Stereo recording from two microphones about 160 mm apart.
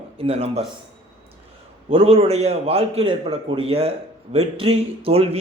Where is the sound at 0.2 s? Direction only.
40° right (ahead or behind).